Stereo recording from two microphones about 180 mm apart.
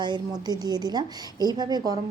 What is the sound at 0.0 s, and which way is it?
A woman's voice, 25° right (ahead or behind).